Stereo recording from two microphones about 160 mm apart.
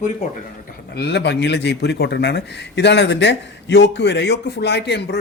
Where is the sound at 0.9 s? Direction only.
90° left.